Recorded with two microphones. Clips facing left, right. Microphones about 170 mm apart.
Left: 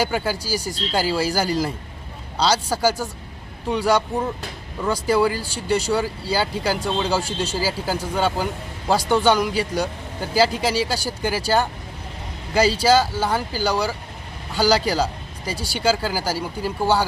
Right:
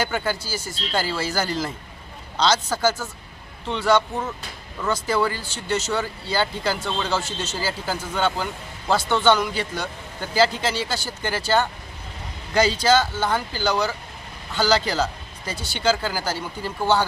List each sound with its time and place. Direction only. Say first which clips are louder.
0.0 s a man's voice: left 2 dB; 10° left (ahead or behind)
12.8 s a man's voice: left 2 dB; 10° left (ahead or behind)